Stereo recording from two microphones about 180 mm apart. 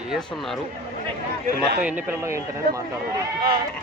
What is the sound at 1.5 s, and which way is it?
Speech, 60° right (ahead or behind).